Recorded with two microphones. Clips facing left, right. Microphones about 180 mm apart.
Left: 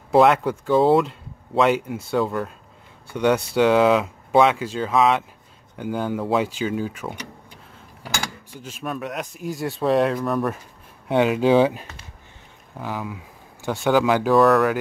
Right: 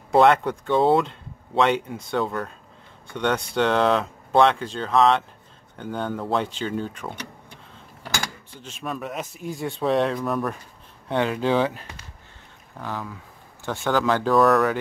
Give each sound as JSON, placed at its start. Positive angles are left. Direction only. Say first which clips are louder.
{"t": 0.1, "sound": "speech", "louder": "left 1 dB", "side_deg": 0}
{"t": 8.6, "sound": "speech", "louder": "left 2 dB", "side_deg": 5}
{"t": 11.1, "sound": "speech", "louder": "left 5 dB", "side_deg": 15}
{"t": 14.3, "sound": "speech", "louder": "left 2 dB", "side_deg": 0}